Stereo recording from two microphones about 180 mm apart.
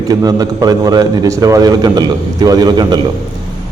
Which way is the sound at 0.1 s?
20° right (ahead or behind).